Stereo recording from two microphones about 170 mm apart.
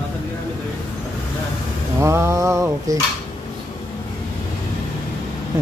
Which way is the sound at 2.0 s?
15° right (ahead or behind).